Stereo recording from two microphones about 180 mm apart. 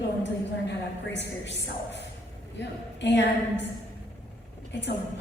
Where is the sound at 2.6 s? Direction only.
80° left.